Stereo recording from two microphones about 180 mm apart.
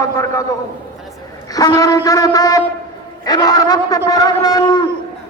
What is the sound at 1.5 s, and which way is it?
A man's voice, 20° left (ahead or behind).